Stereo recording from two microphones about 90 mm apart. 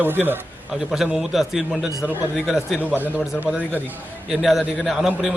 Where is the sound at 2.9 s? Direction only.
20° right (ahead or behind).